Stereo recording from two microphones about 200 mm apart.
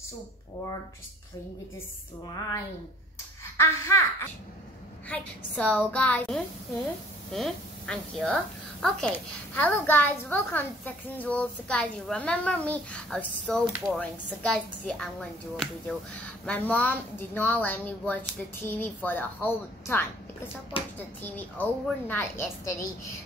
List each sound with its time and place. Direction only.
2.2 s a child's voice: 15° left (ahead or behind)
20.7 s speech: 25° left (ahead or behind)
21.2 s a child's voice: 10° left (ahead or behind)